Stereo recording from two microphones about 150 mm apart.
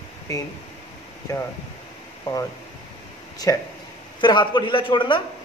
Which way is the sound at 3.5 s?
20° left (ahead or behind).